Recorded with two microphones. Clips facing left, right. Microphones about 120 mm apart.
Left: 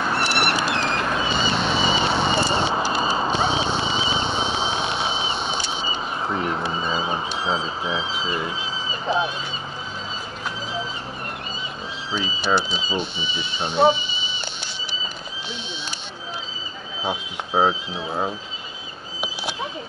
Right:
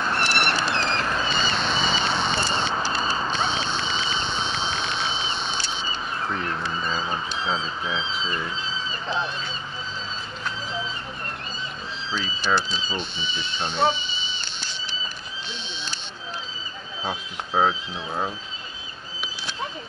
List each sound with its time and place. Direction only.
0.0 s a sound: 15° left (ahead or behind)
12.5 s speech: 10° left (ahead or behind)
17.0 s speech: 15° left (ahead or behind)